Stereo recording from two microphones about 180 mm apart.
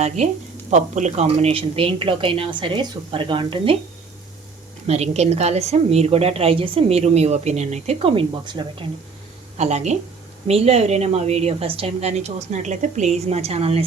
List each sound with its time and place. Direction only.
0.2 s a woman's voice: 35° right (ahead or behind)
4.9 s a woman's voice: 35° right (ahead or behind)
9.6 s a woman's voice: 40° right (ahead or behind)